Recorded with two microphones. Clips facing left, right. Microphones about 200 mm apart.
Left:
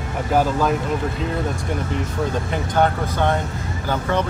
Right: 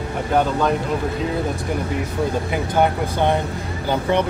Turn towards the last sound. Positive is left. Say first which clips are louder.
# right 2 dB
turn(degrees=-15)  # may be behind; listen again after turning